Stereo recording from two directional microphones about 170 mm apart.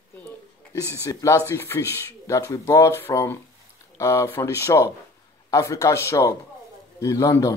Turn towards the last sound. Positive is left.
turn(degrees=20)  # may be behind; listen again after turning